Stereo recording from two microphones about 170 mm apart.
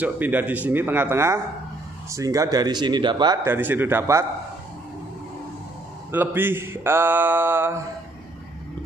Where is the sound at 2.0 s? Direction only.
20° right (ahead or behind).